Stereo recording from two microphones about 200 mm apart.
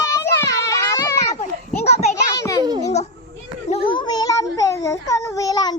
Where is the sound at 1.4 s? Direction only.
35° left (ahead or behind).